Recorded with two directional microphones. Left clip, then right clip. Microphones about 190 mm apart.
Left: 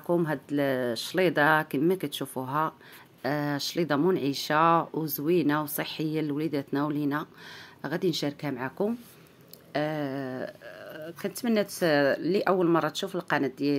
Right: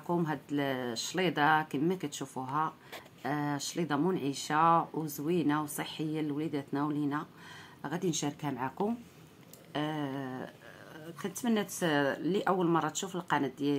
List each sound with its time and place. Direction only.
0.0 s speech: 30° left (ahead or behind)
7.8 s speech: 25° left (ahead or behind)